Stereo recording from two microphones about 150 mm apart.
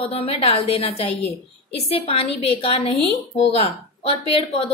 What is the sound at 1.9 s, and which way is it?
A woman's voice, 40° left (ahead or behind).